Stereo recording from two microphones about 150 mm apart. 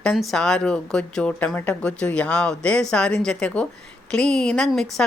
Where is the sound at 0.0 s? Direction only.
Centre (ahead or behind).